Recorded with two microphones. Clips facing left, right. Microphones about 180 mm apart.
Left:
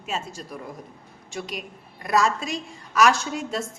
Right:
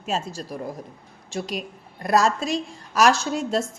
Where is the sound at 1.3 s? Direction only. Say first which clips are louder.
Right 4 dB; 35° right (ahead or behind).